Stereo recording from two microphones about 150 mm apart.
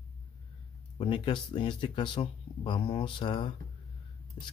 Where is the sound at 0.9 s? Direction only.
35° left (ahead or behind).